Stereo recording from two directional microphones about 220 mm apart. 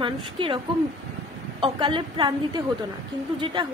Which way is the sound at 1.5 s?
25° right (ahead or behind).